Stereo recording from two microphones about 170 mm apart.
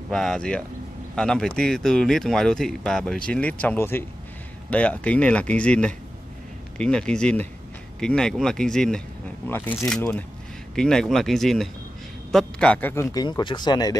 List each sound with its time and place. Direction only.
0.1 s a man's voice: 5° left (ahead or behind); by 13.9 s 25° left (ahead or behind)